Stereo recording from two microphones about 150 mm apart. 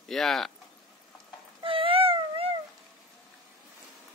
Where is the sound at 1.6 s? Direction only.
35° right (ahead or behind).